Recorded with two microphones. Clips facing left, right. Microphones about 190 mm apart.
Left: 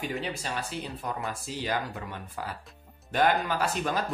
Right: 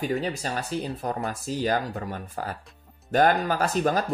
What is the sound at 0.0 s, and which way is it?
Speech, 40° right (ahead or behind).